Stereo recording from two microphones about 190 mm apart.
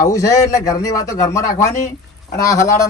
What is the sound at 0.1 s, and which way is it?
A man's voice, 20° left (ahead or behind).